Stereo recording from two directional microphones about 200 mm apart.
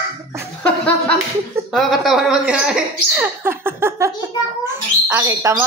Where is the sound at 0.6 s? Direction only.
5° left (ahead or behind).